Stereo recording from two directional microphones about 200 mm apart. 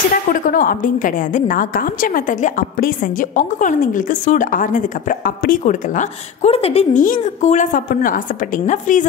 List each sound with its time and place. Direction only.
0.3 s a woman's voice: 45° left (ahead or behind)